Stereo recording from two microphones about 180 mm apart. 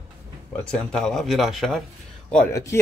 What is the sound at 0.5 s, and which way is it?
Speech, 5° left (ahead or behind).